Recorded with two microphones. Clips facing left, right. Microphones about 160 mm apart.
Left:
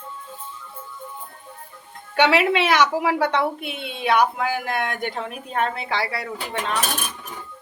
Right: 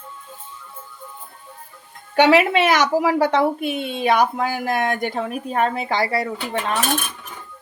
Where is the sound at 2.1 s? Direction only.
45° right (ahead or behind).